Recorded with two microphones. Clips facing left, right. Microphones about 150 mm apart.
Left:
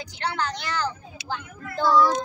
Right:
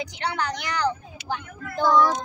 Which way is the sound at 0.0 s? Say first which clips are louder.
Right 1 dB; 20° right (ahead or behind).